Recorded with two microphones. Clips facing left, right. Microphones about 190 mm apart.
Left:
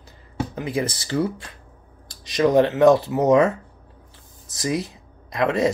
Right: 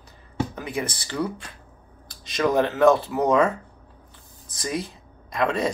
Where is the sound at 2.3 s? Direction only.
20° left (ahead or behind).